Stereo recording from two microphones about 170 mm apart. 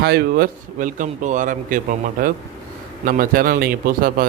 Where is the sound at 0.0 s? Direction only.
65° right (ahead or behind).